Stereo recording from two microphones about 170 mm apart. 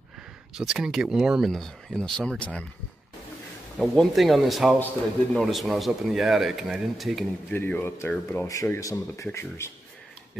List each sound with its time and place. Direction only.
0.6 s speech: 5° right (ahead or behind)
3.7 s speech: centre (ahead or behind)
7.5 s speech: 10° left (ahead or behind)